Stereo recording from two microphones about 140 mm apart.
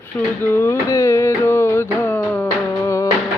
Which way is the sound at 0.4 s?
15° left (ahead or behind).